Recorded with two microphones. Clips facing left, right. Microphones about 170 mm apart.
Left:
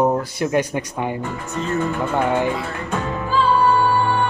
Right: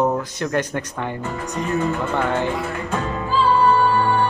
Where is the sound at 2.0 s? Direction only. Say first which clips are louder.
Left 2 dB; 10° left (ahead or behind).